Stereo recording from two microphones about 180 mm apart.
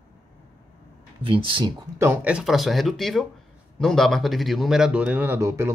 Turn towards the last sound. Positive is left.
turn(degrees=-15)  # may be behind; listen again after turning